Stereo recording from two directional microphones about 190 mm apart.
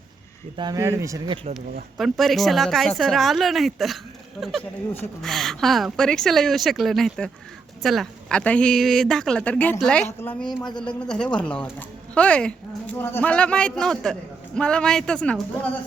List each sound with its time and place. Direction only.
0.5 s speech: 20° right (ahead or behind)
2.0 s speech: centre (ahead or behind)